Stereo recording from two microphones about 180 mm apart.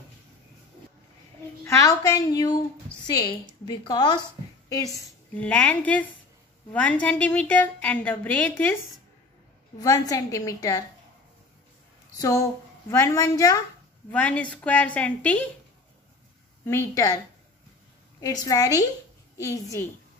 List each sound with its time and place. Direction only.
1.6 s a woman's voice: 15° left (ahead or behind)
5.3 s a woman's voice: 10° left (ahead or behind)
9.8 s a woman's voice: 20° left (ahead or behind)
12.2 s a woman's voice: 15° left (ahead or behind)
14.1 s a woman's voice: 5° left (ahead or behind)
16.6 s a woman's voice: 15° left (ahead or behind)
18.2 s a woman's voice: 20° left (ahead or behind)